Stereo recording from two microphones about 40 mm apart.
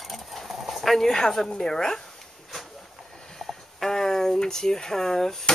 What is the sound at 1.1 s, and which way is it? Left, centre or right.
Speech, centre.